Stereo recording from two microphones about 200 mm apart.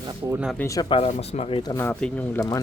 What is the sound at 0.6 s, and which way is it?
Speech, 15° left (ahead or behind).